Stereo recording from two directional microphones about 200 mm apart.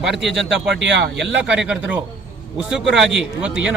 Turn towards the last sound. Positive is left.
turn(degrees=-5)  # may be behind; listen again after turning